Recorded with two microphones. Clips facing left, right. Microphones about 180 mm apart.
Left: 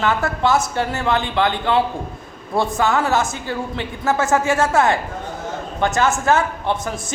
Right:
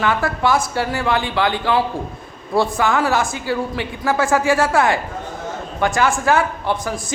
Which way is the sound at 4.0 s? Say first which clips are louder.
Even; 20° left (ahead or behind).